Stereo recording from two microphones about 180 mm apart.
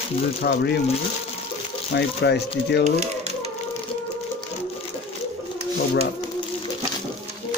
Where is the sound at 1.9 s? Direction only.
70° left (ahead or behind).